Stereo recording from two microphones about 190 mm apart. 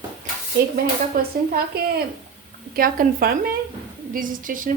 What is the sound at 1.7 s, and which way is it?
Speech, 55° right (ahead or behind).